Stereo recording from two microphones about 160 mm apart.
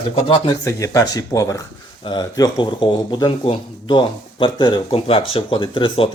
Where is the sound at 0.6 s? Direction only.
20° left (ahead or behind).